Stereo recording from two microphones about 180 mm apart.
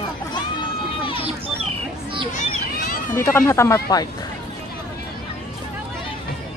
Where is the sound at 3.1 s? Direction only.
15° left (ahead or behind).